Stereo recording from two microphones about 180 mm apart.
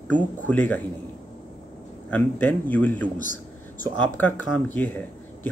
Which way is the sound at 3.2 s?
50° left (ahead or behind).